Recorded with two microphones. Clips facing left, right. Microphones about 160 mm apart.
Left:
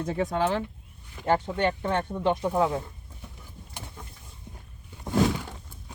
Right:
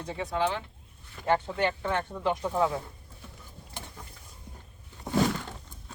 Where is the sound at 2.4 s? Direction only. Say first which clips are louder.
Left 3 dB; 15° left (ahead or behind).